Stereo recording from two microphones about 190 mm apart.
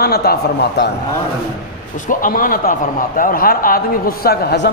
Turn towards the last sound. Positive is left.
turn(degrees=60)  # may be behind; listen again after turning